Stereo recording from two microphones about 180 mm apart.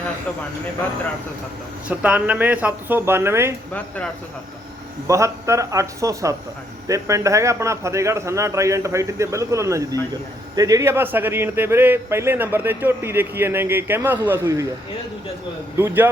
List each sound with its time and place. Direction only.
1.9 s speech: 10° right (ahead or behind)
3.8 s speech: 10° left (ahead or behind)
5.0 s speech: 15° right (ahead or behind)